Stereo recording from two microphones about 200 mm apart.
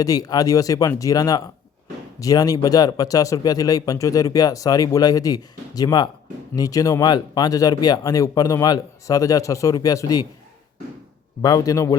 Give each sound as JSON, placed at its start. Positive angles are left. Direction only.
{"t": 0.0, "sound": "speech", "side_deg": 20}
{"t": 11.4, "sound": "speech", "side_deg": 15}